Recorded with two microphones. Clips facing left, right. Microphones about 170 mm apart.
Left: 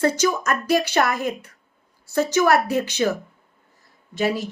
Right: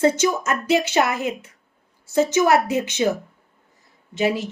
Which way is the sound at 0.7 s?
20° right (ahead or behind).